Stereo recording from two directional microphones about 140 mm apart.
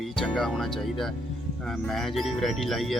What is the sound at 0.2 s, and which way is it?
Speech, centre (ahead or behind).